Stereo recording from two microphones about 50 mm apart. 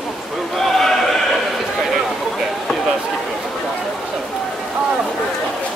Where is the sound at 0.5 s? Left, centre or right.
Centre.